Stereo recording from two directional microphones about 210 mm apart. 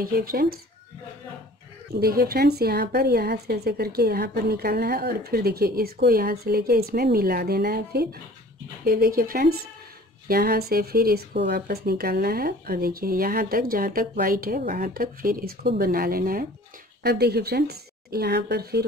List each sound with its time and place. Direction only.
0.0 s a woman's voice: 45° right (ahead or behind)
2.0 s a woman's voice: 45° right (ahead or behind)